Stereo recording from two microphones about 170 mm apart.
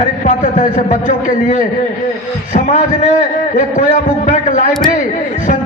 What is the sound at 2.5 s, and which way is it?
Speech, 45° left (ahead or behind).